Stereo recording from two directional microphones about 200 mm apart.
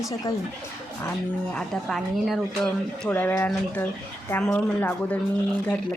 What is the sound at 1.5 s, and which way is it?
Speech, centre (ahead or behind).